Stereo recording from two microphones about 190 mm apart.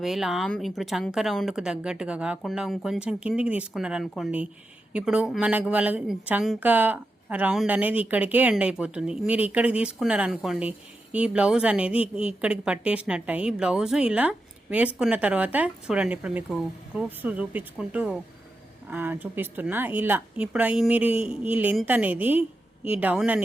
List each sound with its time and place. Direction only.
0.0 s speech: centre (ahead or behind)